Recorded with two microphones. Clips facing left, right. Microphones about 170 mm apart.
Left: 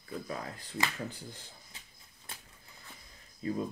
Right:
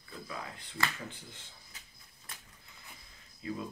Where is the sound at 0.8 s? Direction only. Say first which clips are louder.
Left 1 dB; 15° left (ahead or behind).